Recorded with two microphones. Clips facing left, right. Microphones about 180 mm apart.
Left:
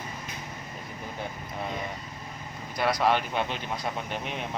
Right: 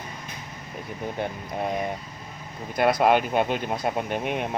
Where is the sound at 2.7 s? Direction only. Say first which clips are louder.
Right 5 dB; 55° right (ahead or behind).